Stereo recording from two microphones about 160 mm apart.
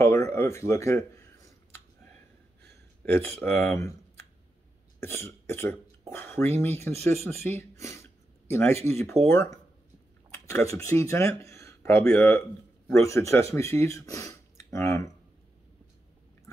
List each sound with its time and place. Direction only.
0.0 s speech: 15° left (ahead or behind)
2.6 s speech: 15° left (ahead or behind)
5.0 s speech: 15° left (ahead or behind)
7.2 s a sound: 15° left (ahead or behind)
8.8 s speech: 15° left (ahead or behind)